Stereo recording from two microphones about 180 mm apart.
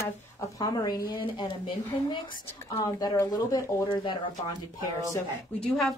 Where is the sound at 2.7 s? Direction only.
15° left (ahead or behind).